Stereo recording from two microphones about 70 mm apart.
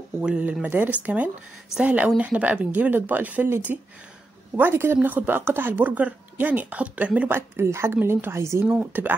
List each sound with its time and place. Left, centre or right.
0.2 s a woman's voice: centre; by 8.6 s right
8.9 s speech: right